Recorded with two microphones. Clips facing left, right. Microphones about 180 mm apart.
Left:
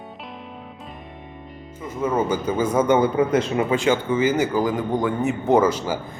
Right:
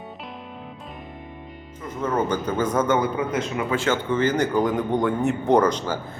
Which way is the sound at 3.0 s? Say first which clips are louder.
Left 5 dB; 30° left (ahead or behind).